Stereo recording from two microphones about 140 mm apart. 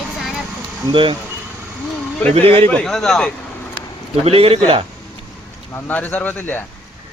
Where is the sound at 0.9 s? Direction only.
35° right (ahead or behind).